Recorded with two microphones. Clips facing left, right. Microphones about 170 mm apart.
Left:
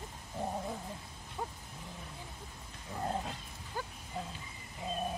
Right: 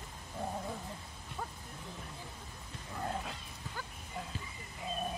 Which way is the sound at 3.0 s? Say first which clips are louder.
Left 2 dB; 30° left (ahead or behind).